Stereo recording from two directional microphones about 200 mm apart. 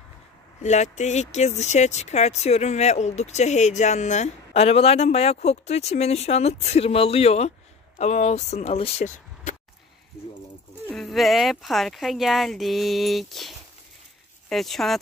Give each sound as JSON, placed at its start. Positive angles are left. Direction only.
{"t": 0.6, "sound": "speech", "side_deg": 35}
{"t": 10.9, "sound": "speech", "side_deg": 0}